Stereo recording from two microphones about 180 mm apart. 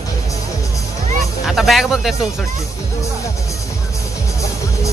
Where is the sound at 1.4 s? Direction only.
Centre (ahead or behind).